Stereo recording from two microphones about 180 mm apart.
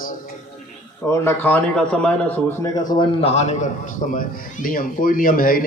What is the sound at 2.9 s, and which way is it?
A man's voice, 25° left (ahead or behind).